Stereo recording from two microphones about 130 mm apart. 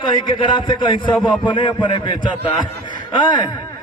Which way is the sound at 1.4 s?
35° left (ahead or behind).